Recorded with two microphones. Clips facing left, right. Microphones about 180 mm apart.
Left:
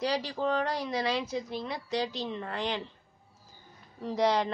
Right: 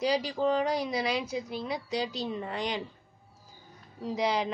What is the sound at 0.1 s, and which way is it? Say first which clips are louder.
A woman's voice: right 3 dB; 5° right (ahead or behind).